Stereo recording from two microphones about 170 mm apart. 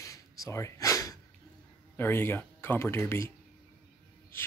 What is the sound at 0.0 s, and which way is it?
Gasp, 20° left (ahead or behind).